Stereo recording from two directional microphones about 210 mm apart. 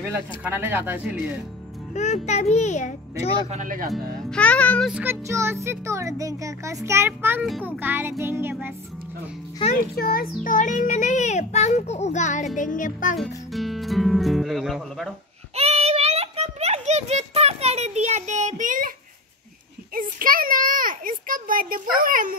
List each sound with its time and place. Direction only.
0.1 s speech: 10° right (ahead or behind)
2.0 s a child's voice: 35° left (ahead or behind)
3.5 s speech: 40° right (ahead or behind)
4.3 s a child's voice: 5° left (ahead or behind)
4.9 s speech: 10° right (ahead or behind)
9.6 s a child's voice: 25° left (ahead or behind)
9.9 s a child's voice: 45° left (ahead or behind)
13.2 s speech: centre (ahead or behind)
15.5 s a sound: 30° right (ahead or behind)